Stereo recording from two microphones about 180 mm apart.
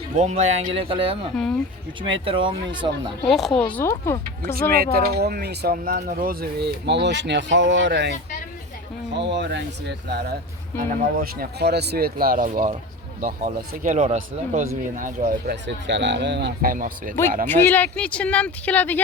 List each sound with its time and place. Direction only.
0.2 s speech: 40° right (ahead or behind)
3.2 s speech: centre (ahead or behind)
4.7 s speech: 60° right (ahead or behind)
9.1 s speech: 75° right (ahead or behind)
10.8 s speech: 55° right (ahead or behind)
15.6 s speech: 75° right (ahead or behind); by 17.2 s 50° right (ahead or behind)
17.5 s speech: 10° left (ahead or behind)